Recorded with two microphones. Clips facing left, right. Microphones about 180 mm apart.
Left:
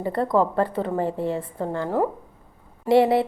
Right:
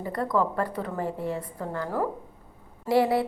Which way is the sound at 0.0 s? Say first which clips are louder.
Left 5 dB; 30° left (ahead or behind).